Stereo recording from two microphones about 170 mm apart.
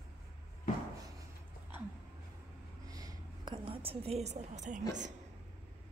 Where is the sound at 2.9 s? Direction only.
25° right (ahead or behind); by 4.8 s 45° right (ahead or behind).